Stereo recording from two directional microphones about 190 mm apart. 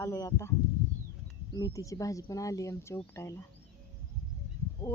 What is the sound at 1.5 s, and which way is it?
Speech, 20° left (ahead or behind).